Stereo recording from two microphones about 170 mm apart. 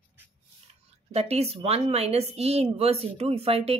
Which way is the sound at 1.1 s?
40° right (ahead or behind).